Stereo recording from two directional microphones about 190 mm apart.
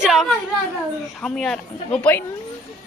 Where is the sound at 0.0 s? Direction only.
Centre (ahead or behind).